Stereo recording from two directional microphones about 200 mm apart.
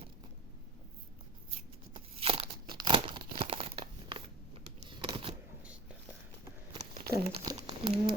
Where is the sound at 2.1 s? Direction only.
30° right (ahead or behind).